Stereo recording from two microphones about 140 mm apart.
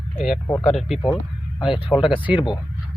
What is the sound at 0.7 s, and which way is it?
Speech, centre (ahead or behind).